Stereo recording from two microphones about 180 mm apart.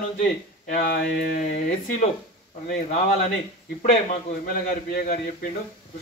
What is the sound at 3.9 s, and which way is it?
A man's voice, 50° left (ahead or behind).